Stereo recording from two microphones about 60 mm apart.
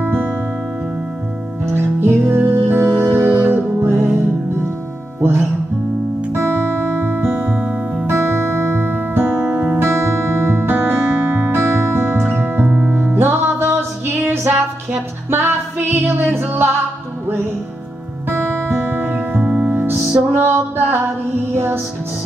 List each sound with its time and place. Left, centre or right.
0.0 s music: right
1.7 s music: right
2.9 s music: right
5.2 s music: right
7.3 s music: right
8.1 s music: right
9.8 s music: right
11.6 s music: right
12.6 s music: right
13.1 s music: right
18.3 s music: right
19.4 s music: centre
20.2 s music: right